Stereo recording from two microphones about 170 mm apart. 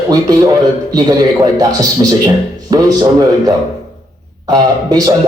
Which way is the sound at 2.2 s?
20° right (ahead or behind).